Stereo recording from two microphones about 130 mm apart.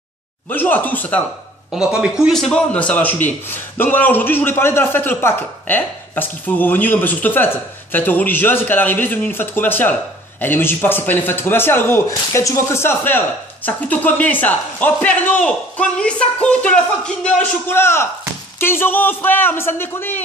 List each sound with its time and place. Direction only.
0.5 s a man's voice: 15° left (ahead or behind)
1.8 s a man's voice: 5° right (ahead or behind)
17.6 s a man's voice: 20° left (ahead or behind)